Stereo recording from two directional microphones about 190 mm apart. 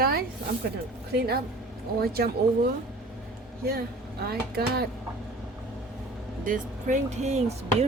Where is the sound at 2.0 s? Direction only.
55° right (ahead or behind).